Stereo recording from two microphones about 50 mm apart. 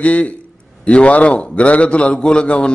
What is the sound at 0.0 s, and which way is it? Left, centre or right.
A man's voice, left.